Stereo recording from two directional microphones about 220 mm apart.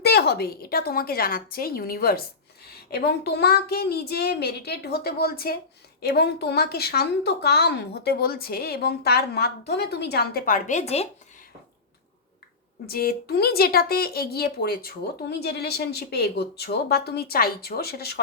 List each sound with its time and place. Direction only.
0.0 s a woman's voice: 45° left (ahead or behind); by 11.1 s 30° left (ahead or behind)
12.8 s a woman's voice: 40° left (ahead or behind)